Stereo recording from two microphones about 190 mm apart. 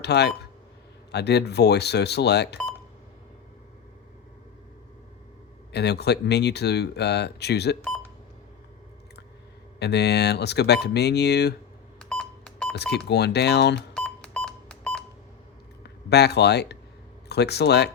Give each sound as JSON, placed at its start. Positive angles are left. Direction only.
{"t": 0.0, "sound": "speech", "side_deg": 60}
{"t": 5.7, "sound": "speech", "side_deg": 60}
{"t": 9.7, "sound": "speech", "side_deg": 60}
{"t": 11.9, "sound": "a sound", "side_deg": 5}
{"t": 12.7, "sound": "speech", "side_deg": 60}
{"t": 13.7, "sound": "beep", "side_deg": 5}
{"t": 16.0, "sound": "speech", "side_deg": 60}